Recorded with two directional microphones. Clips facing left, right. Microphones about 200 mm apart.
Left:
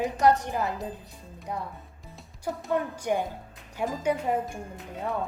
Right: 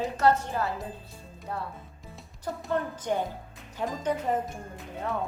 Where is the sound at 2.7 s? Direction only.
10° left (ahead or behind).